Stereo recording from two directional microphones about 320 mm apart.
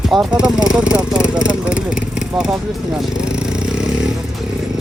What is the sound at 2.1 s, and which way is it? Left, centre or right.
Vehicle, centre.